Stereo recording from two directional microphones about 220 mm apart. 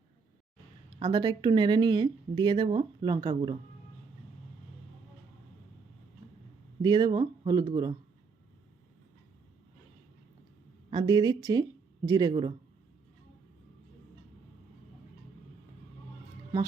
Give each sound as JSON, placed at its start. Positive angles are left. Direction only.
{"t": 0.9, "sound": "speech", "side_deg": -20}
{"t": 6.2, "sound": "a sound", "side_deg": -30}
{"t": 6.8, "sound": "speech", "side_deg": -20}
{"t": 10.9, "sound": "a woman's voice", "side_deg": -20}